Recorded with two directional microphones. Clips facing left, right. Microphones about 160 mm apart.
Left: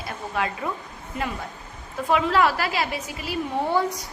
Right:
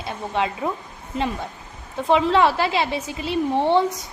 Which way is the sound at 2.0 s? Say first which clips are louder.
Right 3 dB; 25° right (ahead or behind).